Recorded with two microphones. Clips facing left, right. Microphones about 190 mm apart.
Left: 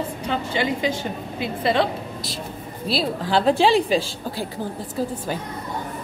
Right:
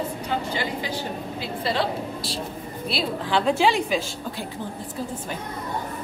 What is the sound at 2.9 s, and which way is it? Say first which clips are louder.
A woman's voice: left 3 dB; 35° left (ahead or behind).